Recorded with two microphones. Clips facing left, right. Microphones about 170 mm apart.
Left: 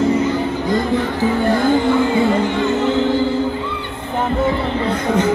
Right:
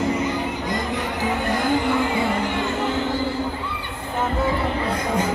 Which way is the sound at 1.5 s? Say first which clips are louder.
Left 5 dB; 30° left (ahead or behind).